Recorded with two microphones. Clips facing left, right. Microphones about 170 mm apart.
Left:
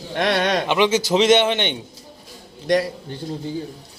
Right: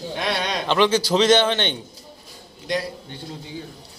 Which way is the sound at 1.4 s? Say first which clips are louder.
Left 1 dB; 10° left (ahead or behind).